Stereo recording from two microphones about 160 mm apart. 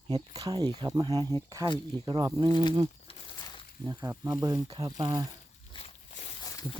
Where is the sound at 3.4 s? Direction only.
25° left (ahead or behind).